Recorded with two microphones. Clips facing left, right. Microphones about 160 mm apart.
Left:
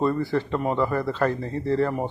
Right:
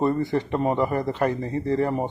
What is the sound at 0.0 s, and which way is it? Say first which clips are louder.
A man's voice: right 1 dB; 20° right (ahead or behind).